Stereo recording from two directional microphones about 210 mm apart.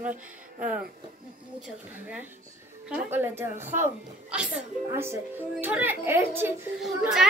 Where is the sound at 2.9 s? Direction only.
10° right (ahead or behind).